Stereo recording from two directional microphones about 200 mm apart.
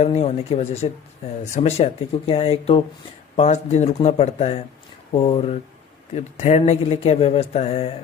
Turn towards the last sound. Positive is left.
turn(degrees=30)  # may be behind; listen again after turning